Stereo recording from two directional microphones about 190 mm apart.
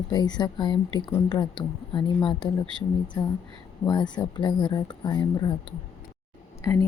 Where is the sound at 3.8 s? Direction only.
20° left (ahead or behind).